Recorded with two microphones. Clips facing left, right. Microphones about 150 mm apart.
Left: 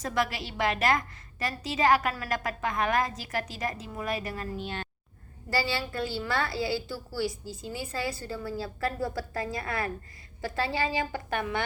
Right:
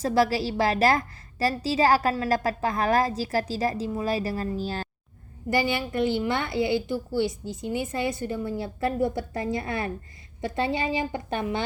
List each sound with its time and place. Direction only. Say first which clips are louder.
0.0 s a woman's voice: right 7 dB; 35° right (ahead or behind)
5.5 s a woman's voice: right 5 dB; 20° right (ahead or behind)